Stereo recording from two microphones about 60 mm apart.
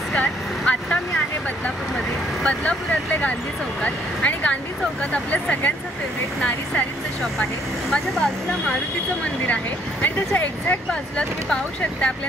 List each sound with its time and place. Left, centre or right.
0.1 s vehicle: left
2.4 s speech: left
7.9 s speech: centre
10.0 s speech: left
10.9 s speech: centre